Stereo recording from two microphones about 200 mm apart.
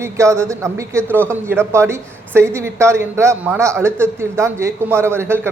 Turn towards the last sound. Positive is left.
turn(degrees=-10)  # may be behind; listen again after turning